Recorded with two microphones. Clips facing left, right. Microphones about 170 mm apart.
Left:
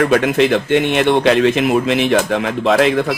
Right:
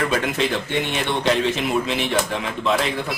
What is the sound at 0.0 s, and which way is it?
Speech, 70° left (ahead or behind).